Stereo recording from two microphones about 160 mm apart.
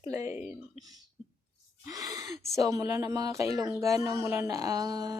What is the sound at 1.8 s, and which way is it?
Speech, 25° right (ahead or behind).